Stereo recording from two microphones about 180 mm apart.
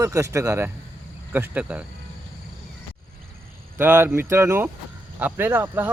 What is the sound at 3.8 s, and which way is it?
Speech, 10° right (ahead or behind).